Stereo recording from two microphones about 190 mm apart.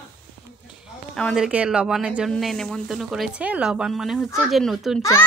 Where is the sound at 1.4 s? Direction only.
5° right (ahead or behind).